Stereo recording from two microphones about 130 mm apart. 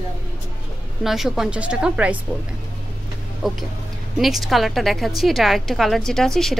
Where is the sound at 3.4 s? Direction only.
5° right (ahead or behind).